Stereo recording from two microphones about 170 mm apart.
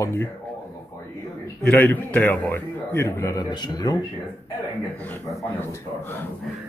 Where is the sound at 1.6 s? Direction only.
10° left (ahead or behind).